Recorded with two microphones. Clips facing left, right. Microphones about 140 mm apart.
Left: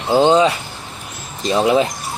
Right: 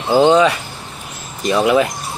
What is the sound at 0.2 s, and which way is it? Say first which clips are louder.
Speech: right 2 dB; 30° left (ahead or behind).